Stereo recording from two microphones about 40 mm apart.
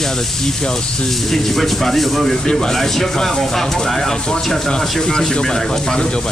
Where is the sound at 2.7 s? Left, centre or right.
Centre.